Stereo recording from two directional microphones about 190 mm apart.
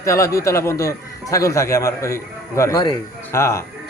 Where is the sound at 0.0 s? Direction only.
15° left (ahead or behind).